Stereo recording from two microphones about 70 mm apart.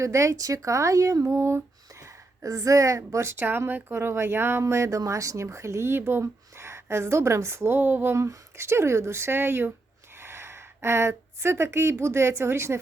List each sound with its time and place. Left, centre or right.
0.0 s speech: right
1.3 s speech: right
4.6 s speech: right
8.1 s speech: right